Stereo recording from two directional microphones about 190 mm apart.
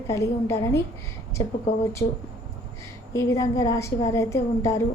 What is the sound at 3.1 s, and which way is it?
A woman's voice, 15° left (ahead or behind).